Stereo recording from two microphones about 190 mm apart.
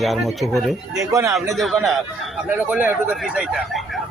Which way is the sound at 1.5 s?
Centre (ahead or behind).